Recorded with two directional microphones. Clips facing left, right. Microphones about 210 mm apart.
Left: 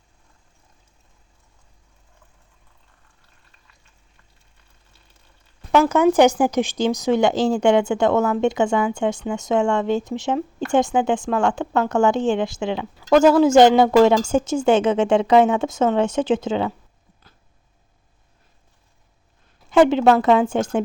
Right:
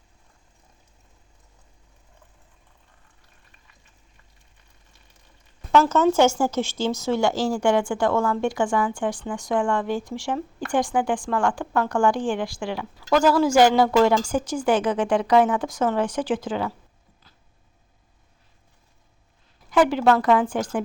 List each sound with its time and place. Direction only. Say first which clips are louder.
5.7 s speech: left 3 dB; 15° left (ahead or behind)
19.7 s speech: left 4 dB; 25° left (ahead or behind)